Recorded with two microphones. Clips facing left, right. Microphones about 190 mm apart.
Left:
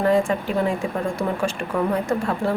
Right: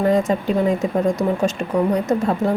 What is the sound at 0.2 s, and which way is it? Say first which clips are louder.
Speech: right 3 dB; 20° right (ahead or behind).